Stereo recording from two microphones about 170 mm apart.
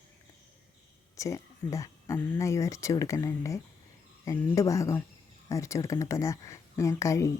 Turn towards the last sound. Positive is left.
turn(degrees=20)  # may be behind; listen again after turning